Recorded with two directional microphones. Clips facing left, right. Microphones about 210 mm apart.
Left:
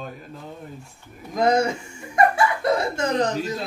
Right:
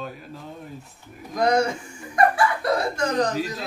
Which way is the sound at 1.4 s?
25° left (ahead or behind).